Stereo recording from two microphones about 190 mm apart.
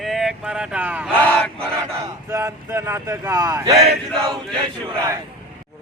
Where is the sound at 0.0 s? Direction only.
Centre (ahead or behind).